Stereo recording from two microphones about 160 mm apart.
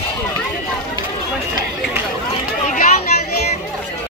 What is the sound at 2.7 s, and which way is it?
Children playing, 50° left (ahead or behind).